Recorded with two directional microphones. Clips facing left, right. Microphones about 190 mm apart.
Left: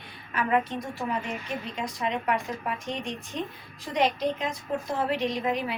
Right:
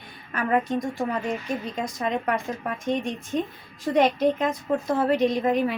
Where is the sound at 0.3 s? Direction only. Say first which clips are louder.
Right 3 dB; 45° right (ahead or behind).